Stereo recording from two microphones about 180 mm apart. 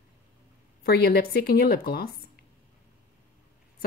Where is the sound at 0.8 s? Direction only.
60° left (ahead or behind).